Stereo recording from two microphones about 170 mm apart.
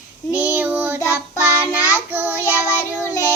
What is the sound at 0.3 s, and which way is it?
Child singing, 10° right (ahead or behind).